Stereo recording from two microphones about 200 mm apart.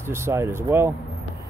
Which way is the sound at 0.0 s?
10° right (ahead or behind).